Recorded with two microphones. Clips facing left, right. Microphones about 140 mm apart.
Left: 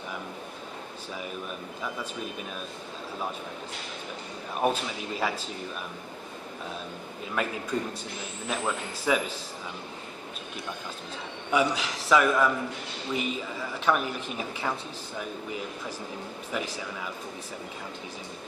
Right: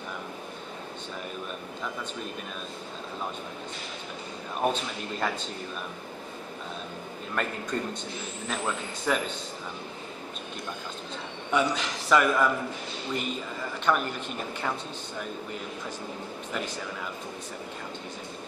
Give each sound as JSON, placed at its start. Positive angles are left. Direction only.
{"t": 5.1, "sound": "speech", "side_deg": 5}
{"t": 7.4, "sound": "speech", "side_deg": 5}
{"t": 11.5, "sound": "speech", "side_deg": 5}
{"t": 16.5, "sound": "speech", "side_deg": 5}